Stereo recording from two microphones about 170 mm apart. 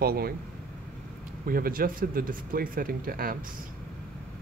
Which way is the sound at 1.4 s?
55° right (ahead or behind).